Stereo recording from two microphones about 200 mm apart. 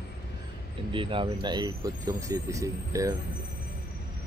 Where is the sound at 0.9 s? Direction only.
25° right (ahead or behind).